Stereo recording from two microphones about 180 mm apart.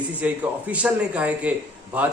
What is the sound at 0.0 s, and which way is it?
A man's voice, 10° right (ahead or behind).